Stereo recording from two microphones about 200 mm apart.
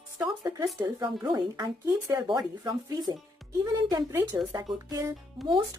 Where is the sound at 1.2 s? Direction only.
20° right (ahead or behind).